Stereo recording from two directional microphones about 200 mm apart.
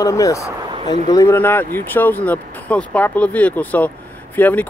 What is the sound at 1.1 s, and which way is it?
Speech, 15° left (ahead or behind).